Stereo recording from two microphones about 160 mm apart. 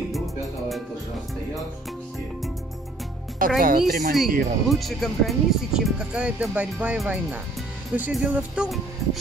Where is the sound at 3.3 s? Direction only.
60° right (ahead or behind).